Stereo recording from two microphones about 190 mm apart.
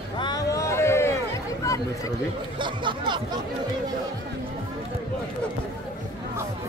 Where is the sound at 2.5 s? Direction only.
25° right (ahead or behind).